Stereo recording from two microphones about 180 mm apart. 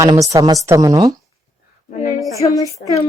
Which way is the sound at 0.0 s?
20° right (ahead or behind).